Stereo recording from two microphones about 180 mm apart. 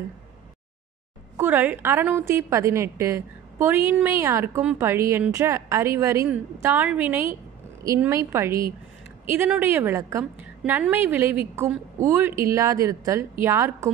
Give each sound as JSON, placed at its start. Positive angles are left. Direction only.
{"t": 1.3, "sound": "a woman's voice", "side_deg": -10}